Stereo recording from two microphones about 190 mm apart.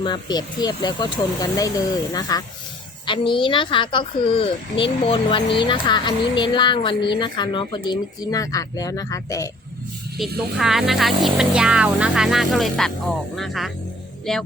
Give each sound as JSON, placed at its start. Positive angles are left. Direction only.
{"t": 0.0, "sound": "speech", "side_deg": 25}
{"t": 10.2, "sound": "speech", "side_deg": 0}